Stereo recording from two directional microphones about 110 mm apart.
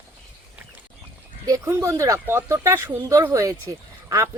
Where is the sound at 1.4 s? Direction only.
30° right (ahead or behind).